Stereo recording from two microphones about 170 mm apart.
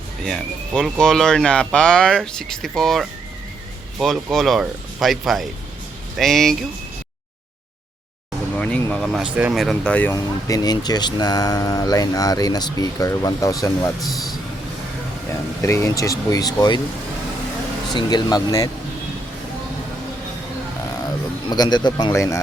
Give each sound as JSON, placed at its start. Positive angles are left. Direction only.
{"t": 0.2, "sound": "speech", "side_deg": 0}
{"t": 8.5, "sound": "speech", "side_deg": 5}
{"t": 9.3, "sound": "speech", "side_deg": -5}
{"t": 10.1, "sound": "speech", "side_deg": 20}
{"t": 14.0, "sound": "speech", "side_deg": 0}
{"t": 15.6, "sound": "speech", "side_deg": 15}
{"t": 17.9, "sound": "speech", "side_deg": 25}
{"t": 21.5, "sound": "speech", "side_deg": 25}